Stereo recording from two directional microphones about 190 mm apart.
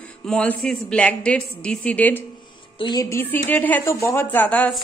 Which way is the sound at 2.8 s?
20° left (ahead or behind).